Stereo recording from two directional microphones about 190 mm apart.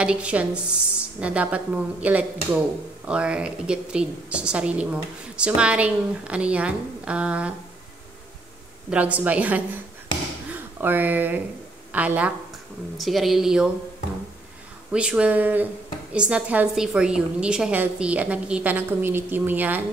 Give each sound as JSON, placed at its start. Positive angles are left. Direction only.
{"t": 0.0, "sound": "a woman's voice", "side_deg": -5}
{"t": 8.9, "sound": "a woman's voice", "side_deg": -10}
{"t": 14.9, "sound": "speech", "side_deg": -5}